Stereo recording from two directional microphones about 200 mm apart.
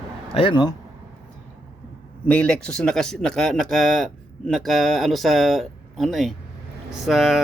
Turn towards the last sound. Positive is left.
turn(degrees=0)  # may be behind; listen again after turning